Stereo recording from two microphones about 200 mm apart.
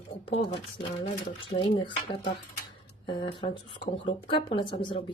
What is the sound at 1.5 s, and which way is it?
A woman's voice, 25° left (ahead or behind).